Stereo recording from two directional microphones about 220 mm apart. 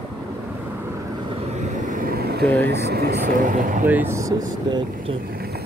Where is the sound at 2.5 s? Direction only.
50° right (ahead or behind).